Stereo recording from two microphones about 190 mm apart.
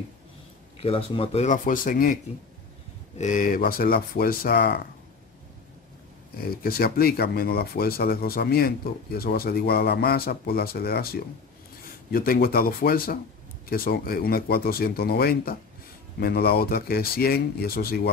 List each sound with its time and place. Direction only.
0.8 s speech: 30° left (ahead or behind)
3.2 s speech: 45° left (ahead or behind)
6.4 s speech: 55° left (ahead or behind)